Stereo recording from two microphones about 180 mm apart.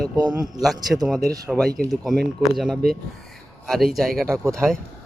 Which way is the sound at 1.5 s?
Centre (ahead or behind).